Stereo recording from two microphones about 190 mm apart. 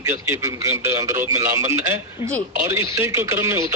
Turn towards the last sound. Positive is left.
turn(degrees=-15)  # may be behind; listen again after turning